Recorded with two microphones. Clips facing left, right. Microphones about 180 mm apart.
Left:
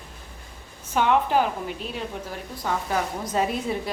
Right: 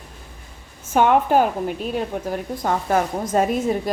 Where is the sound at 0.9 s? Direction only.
50° right (ahead or behind).